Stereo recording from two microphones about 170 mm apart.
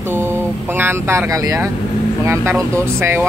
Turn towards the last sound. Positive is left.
turn(degrees=-15)  # may be behind; listen again after turning